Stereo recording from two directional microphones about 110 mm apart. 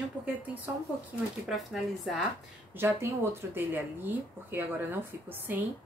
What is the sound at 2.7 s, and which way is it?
A woman's voice, 20° right (ahead or behind).